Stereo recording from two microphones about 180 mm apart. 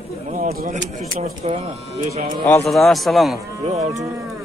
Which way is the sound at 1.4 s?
35° right (ahead or behind).